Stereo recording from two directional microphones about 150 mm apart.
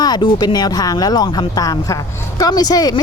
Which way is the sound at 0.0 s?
30° left (ahead or behind).